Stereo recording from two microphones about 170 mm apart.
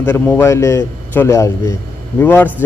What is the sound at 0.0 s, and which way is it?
A man's voice, 15° left (ahead or behind).